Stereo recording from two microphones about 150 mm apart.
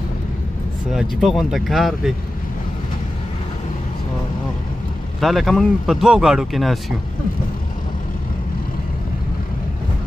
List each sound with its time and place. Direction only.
0.9 s speech: centre (ahead or behind)
5.2 s speech: centre (ahead or behind)